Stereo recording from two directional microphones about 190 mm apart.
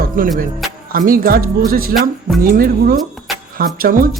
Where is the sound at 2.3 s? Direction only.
Centre (ahead or behind).